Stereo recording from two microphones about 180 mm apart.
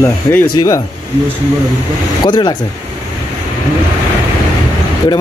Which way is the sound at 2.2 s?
25° left (ahead or behind).